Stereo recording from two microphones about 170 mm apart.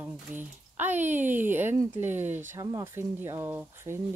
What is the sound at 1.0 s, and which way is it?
Speech, 45° right (ahead or behind).